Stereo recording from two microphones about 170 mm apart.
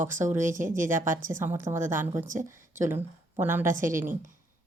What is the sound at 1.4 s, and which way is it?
Speech, 15° right (ahead or behind).